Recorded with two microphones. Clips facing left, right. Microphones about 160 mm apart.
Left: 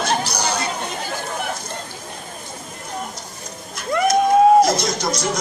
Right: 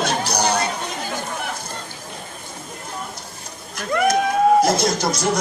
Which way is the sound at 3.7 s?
55° right (ahead or behind).